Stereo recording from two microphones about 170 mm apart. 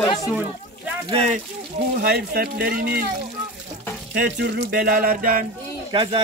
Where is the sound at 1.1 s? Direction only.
35° right (ahead or behind).